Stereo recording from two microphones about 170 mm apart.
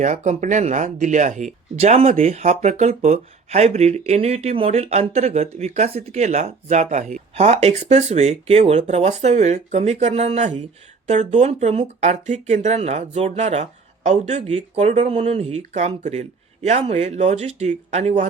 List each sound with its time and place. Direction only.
0.0 s speech: 45° right (ahead or behind)